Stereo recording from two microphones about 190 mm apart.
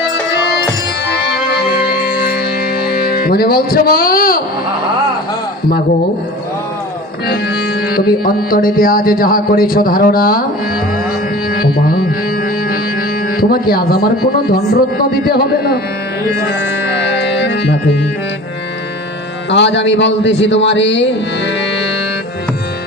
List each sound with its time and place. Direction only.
1.0 s music: 60° left (ahead or behind)
2.8 s speech: 55° left (ahead or behind)
7.3 s music: 55° left (ahead or behind)
11.5 s music: 50° left (ahead or behind)
16.5 s music: 65° left (ahead or behind)
19.5 s a man's voice: 70° left (ahead or behind)